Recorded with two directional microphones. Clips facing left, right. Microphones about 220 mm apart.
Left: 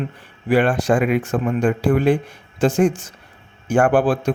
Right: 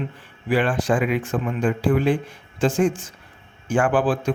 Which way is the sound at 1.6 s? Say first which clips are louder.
Left 2 dB; 70° left (ahead or behind).